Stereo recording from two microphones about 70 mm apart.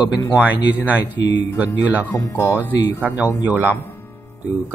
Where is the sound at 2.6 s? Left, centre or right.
Right.